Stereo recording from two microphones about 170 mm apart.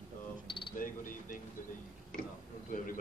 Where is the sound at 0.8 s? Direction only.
55° left (ahead or behind).